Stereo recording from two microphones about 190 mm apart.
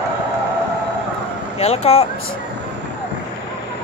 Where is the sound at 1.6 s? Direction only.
30° left (ahead or behind).